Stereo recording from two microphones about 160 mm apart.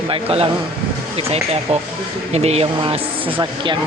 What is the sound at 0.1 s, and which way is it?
Speech, 35° right (ahead or behind).